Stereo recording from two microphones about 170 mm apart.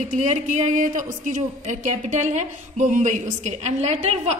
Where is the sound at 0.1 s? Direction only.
45° right (ahead or behind).